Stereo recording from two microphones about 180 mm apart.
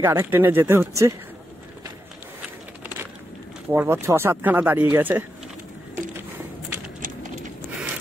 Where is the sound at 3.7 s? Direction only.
15° right (ahead or behind).